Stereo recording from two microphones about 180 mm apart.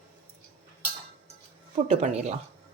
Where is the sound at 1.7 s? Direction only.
40° right (ahead or behind).